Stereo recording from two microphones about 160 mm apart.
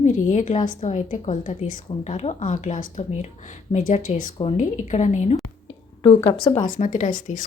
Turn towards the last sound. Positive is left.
turn(degrees=55)  # may be behind; listen again after turning